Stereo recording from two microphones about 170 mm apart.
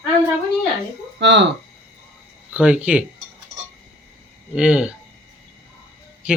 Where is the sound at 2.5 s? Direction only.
5° right (ahead or behind).